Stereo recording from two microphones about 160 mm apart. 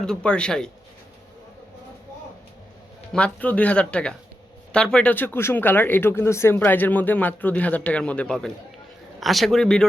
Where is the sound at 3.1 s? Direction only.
10° left (ahead or behind).